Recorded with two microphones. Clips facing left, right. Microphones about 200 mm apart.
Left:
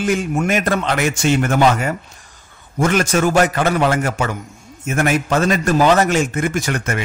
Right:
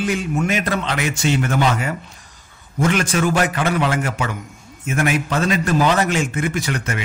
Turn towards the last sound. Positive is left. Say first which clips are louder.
# left 3 dB
turn(degrees=45)  # may be behind; listen again after turning